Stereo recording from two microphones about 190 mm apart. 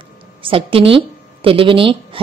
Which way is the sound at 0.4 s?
30° right (ahead or behind).